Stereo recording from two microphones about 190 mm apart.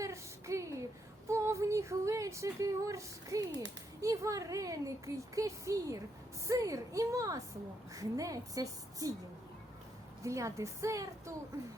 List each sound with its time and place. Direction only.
0.0 s a sound: 15° right (ahead or behind)
4.0 s speech: 15° right (ahead or behind)
10.2 s speech: 15° right (ahead or behind)